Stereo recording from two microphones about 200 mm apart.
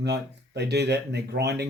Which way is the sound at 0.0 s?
55° right (ahead or behind).